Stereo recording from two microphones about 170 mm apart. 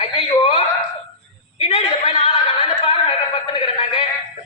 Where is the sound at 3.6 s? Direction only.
35° left (ahead or behind).